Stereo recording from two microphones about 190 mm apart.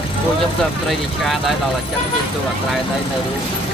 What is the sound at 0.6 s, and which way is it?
Speech, centre (ahead or behind).